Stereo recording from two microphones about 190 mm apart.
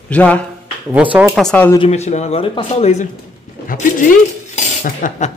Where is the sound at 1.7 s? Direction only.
30° left (ahead or behind).